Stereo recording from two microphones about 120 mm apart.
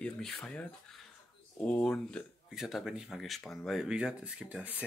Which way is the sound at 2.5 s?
Centre (ahead or behind).